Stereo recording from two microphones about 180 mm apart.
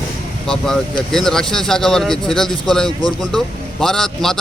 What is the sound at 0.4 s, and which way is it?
A man's voice, 5° left (ahead or behind).